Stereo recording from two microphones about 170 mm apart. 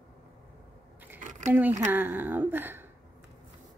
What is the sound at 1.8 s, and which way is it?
A woman's voice, 10° right (ahead or behind).